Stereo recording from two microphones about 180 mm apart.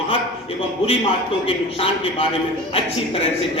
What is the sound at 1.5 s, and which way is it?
Speech, 30° left (ahead or behind).